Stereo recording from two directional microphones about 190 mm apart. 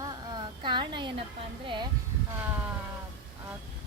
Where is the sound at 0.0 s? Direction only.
25° right (ahead or behind).